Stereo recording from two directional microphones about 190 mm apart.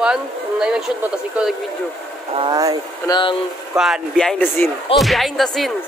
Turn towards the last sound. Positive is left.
turn(degrees=0)  # may be behind; listen again after turning